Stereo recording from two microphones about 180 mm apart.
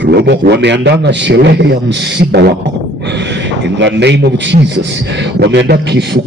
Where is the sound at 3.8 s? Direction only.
75° right (ahead or behind).